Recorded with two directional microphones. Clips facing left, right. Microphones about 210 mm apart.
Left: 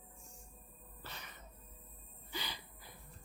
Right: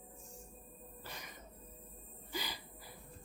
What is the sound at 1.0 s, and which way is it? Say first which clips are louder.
Music: right 1 dB; 10° right (ahead or behind).